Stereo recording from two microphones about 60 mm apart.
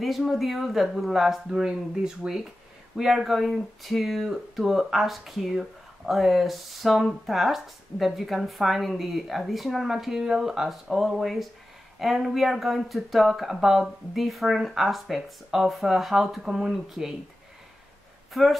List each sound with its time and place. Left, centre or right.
0.0 s speech: centre
18.3 s speech: centre